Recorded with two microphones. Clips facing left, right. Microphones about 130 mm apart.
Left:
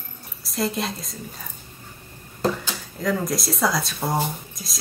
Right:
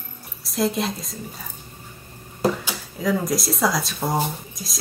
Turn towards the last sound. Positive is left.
turn(degrees=0)  # may be behind; listen again after turning